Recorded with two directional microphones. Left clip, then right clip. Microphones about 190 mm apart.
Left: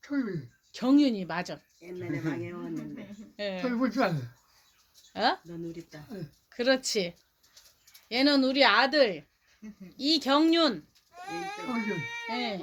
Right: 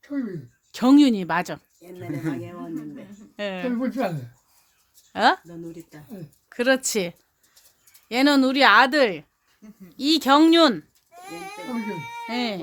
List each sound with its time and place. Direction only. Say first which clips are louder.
0.0 s speech: right 2 dB; 5° right (ahead or behind)
0.7 s speech: right 8 dB; 45° right (ahead or behind)
1.9 s speech: right 3 dB; 60° right (ahead or behind)
3.3 s speech: right 4 dB; 30° right (ahead or behind)
3.8 s speech: left 1 dB; 5° right (ahead or behind)
5.1 s speech: right 8 dB; 30° right (ahead or behind)
6.5 s speech: right 5 dB; 30° right (ahead or behind)
9.6 s speech: left 1 dB; 65° right (ahead or behind)
10.0 s a child's voice: right 7 dB; 40° right (ahead or behind)
12.0 s a sound: right 3 dB; 55° right (ahead or behind)
12.3 s speech: right 6 dB; 40° right (ahead or behind)